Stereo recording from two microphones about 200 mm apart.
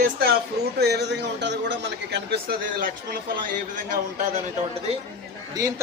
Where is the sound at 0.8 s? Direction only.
55° right (ahead or behind).